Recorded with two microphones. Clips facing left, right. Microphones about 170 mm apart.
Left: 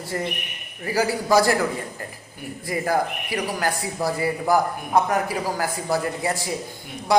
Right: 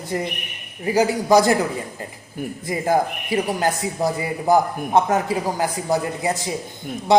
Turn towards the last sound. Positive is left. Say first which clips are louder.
# right 4 dB
turn(degrees=-25)  # may be behind; listen again after turning